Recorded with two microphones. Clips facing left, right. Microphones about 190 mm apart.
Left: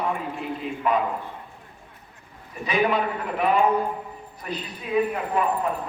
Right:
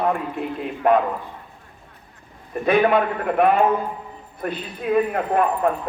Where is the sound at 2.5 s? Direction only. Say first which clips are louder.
Right 6 dB; 55° right (ahead or behind).